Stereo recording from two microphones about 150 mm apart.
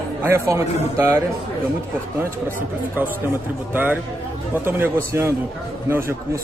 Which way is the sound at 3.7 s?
10° right (ahead or behind).